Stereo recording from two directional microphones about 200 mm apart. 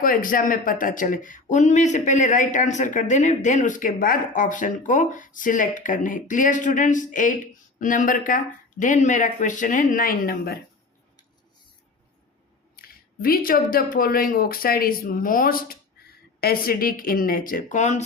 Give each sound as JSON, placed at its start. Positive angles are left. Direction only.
{"t": 0.0, "sound": "speech", "side_deg": 45}
{"t": 13.2, "sound": "speech", "side_deg": 45}